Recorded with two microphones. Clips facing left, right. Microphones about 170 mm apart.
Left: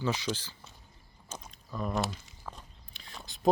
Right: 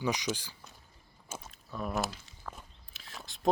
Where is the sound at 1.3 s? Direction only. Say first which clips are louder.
Left 1 dB; 5° right (ahead or behind).